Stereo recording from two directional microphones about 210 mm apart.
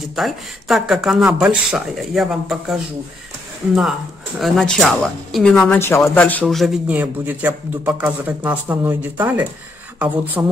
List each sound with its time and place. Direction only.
0.0 s speech: centre (ahead or behind)
4.4 s speech: centre (ahead or behind)